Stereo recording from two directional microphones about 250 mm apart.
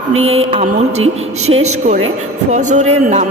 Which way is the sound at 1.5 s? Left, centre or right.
Right.